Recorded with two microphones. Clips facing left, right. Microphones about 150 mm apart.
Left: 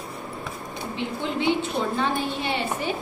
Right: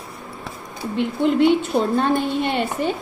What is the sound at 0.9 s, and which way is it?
A woman's voice, 55° right (ahead or behind).